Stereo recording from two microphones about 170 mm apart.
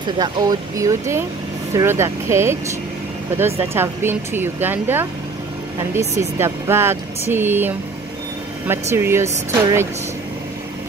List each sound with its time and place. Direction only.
0.0 s speech: 25° right (ahead or behind)
3.7 s speech: 15° right (ahead or behind)